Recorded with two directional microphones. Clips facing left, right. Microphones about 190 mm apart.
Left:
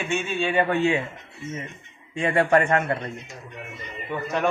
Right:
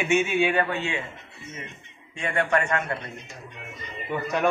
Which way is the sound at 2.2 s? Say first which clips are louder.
Left 5 dB; 35° left (ahead or behind).